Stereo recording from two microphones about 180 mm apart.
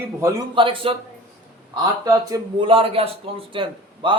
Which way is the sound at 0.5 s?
30° right (ahead or behind).